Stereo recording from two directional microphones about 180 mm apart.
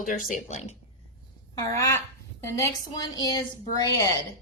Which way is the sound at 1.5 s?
20° left (ahead or behind).